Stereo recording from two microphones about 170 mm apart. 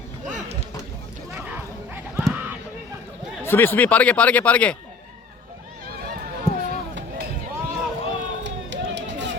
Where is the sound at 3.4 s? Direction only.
10° left (ahead or behind).